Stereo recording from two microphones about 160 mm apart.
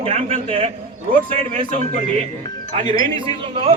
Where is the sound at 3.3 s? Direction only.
25° left (ahead or behind).